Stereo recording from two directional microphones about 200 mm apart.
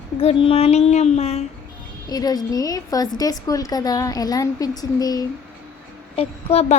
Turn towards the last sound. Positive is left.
turn(degrees=30)  # may be behind; listen again after turning